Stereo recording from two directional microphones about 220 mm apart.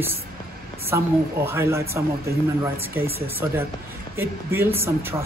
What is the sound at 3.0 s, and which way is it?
Speech, 25° right (ahead or behind).